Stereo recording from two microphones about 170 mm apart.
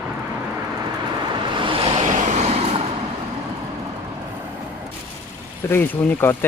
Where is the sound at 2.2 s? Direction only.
40° right (ahead or behind).